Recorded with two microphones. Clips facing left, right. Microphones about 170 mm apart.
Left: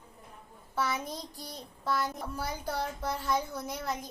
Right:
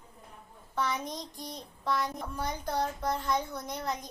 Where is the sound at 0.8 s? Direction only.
5° left (ahead or behind).